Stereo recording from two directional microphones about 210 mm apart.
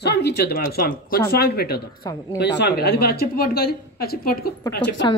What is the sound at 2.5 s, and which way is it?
A woman's voice, 50° left (ahead or behind).